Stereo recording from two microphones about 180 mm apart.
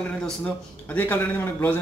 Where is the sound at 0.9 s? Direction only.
10° left (ahead or behind).